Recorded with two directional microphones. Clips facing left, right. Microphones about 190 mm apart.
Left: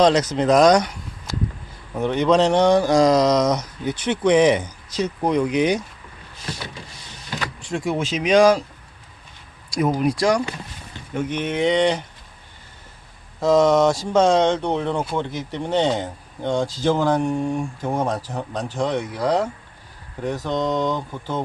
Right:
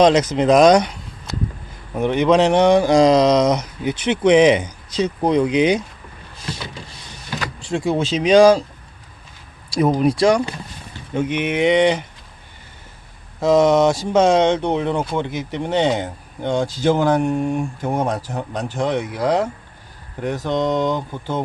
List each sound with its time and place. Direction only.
0.0 s speech: 20° right (ahead or behind)
2.0 s speech: 15° right (ahead or behind)
3.2 s speech: 30° right (ahead or behind)
7.6 s speech: 30° right (ahead or behind)
9.6 s a sound: 30° right (ahead or behind)
10.0 s speech: 25° right (ahead or behind)
11.4 s speech: 10° right (ahead or behind)
13.4 s speech: 20° right (ahead or behind)